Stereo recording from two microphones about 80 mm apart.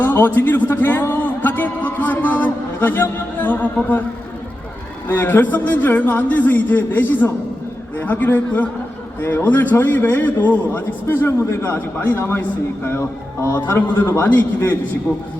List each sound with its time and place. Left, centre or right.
0.0 s a man's voice: left
5.0 s a man's voice: left